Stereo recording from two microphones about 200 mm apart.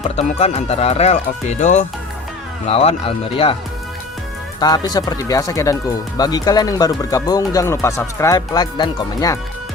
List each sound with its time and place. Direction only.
0.2 s speech: 30° left (ahead or behind)
4.6 s speech: 20° left (ahead or behind)